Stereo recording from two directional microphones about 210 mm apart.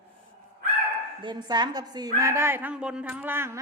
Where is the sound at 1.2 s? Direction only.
20° right (ahead or behind).